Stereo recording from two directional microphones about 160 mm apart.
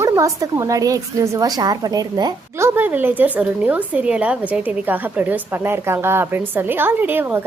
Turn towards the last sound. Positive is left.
turn(degrees=-10)  # may be behind; listen again after turning